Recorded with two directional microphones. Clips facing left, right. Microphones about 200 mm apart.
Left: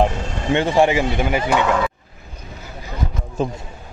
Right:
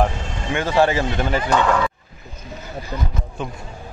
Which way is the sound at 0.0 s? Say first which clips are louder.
Left 2 dB; 25° left (ahead or behind).